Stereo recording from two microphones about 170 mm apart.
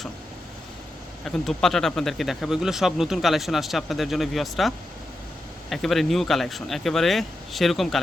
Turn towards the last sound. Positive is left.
turn(degrees=0)  # may be behind; listen again after turning